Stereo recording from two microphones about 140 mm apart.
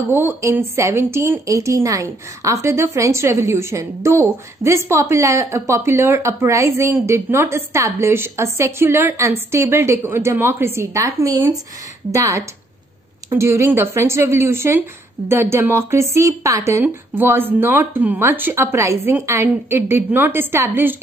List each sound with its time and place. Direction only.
0.1 s a woman's voice: 15° right (ahead or behind)